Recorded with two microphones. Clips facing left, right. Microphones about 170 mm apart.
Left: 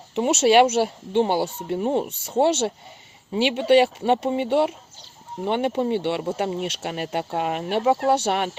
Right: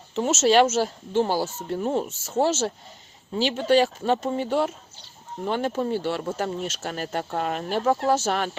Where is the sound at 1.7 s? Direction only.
15° left (ahead or behind).